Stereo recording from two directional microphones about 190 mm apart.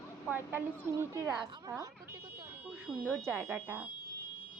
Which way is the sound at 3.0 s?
10° right (ahead or behind).